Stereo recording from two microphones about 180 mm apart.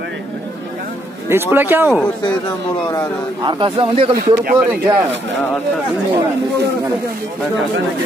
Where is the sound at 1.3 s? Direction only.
10° right (ahead or behind).